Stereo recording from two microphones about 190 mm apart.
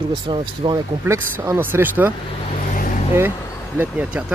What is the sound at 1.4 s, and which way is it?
Speech, 10° right (ahead or behind).